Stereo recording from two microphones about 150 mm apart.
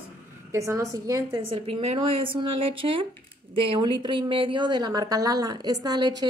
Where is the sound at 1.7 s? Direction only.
40° right (ahead or behind).